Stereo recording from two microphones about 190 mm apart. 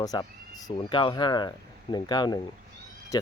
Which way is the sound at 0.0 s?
20° left (ahead or behind).